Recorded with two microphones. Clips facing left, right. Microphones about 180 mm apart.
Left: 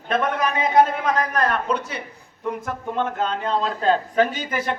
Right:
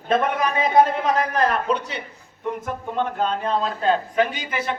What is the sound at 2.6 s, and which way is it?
Speech, 15° right (ahead or behind).